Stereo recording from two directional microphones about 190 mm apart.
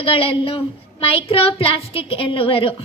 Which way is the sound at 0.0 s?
30° left (ahead or behind).